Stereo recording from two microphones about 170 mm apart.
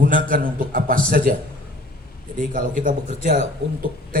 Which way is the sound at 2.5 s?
55° right (ahead or behind).